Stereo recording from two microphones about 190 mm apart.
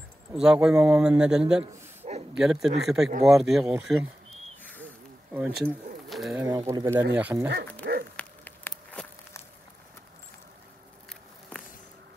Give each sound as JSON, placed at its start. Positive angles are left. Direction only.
{"t": 0.3, "sound": "a man's voice", "side_deg": -5}
{"t": 1.6, "sound": "a sound", "side_deg": -35}
{"t": 2.3, "sound": "a man's voice", "side_deg": 0}
{"t": 4.6, "sound": "snake", "side_deg": 10}
{"t": 5.3, "sound": "speech", "side_deg": -5}
{"t": 6.0, "sound": "bird", "side_deg": 0}
{"t": 6.3, "sound": "speech", "side_deg": -15}
{"t": 7.8, "sound": "dog", "side_deg": -60}
{"t": 8.2, "sound": "a sound", "side_deg": 5}